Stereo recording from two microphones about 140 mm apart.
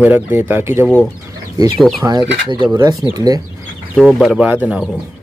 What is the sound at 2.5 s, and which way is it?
Speech, 35° right (ahead or behind).